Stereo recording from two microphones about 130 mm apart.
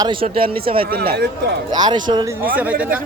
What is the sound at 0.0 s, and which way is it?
Speech, 40° right (ahead or behind).